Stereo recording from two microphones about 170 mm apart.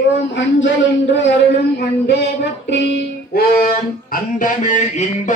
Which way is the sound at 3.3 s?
60° left (ahead or behind).